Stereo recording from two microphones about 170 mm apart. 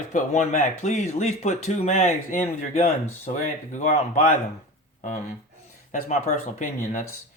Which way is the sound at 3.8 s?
45° left (ahead or behind).